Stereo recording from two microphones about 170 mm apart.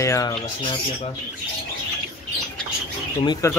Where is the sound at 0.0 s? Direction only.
20° left (ahead or behind).